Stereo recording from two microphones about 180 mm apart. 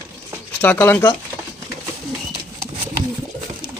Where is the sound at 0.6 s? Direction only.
10° left (ahead or behind).